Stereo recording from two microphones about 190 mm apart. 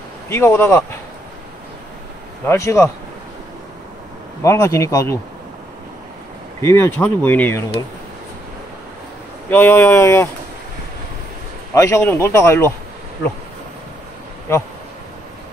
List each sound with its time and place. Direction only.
0.3 s speech: 10° left (ahead or behind)
2.4 s speech: 15° left (ahead or behind)
4.4 s speech: 15° left (ahead or behind)
6.6 s speech: 15° left (ahead or behind)
9.5 s speech: 10° left (ahead or behind)
11.7 s speech: 15° left (ahead or behind)